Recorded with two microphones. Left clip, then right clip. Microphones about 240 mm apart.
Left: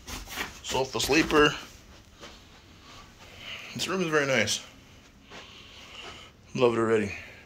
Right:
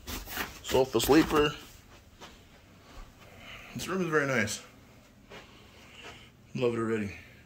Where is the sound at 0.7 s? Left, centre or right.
Right.